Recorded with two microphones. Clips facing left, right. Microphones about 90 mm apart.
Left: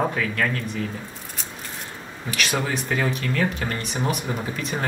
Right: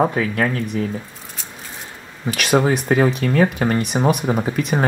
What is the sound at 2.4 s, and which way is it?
Speech, 45° right (ahead or behind).